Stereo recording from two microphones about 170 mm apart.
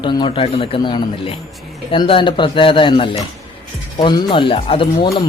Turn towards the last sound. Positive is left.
turn(degrees=30)  # may be behind; listen again after turning